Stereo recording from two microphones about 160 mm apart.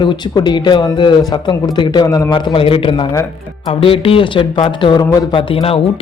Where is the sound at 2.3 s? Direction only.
30° left (ahead or behind).